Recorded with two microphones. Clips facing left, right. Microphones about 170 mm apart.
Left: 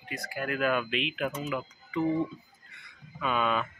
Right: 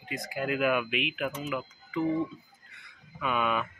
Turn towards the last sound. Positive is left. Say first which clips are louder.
# left 1 dB
turn(degrees=-5)  # may be behind; listen again after turning